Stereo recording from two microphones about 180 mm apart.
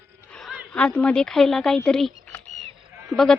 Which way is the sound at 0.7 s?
10° left (ahead or behind).